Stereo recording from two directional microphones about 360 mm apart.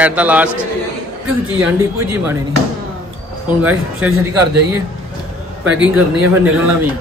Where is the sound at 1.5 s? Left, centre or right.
Centre.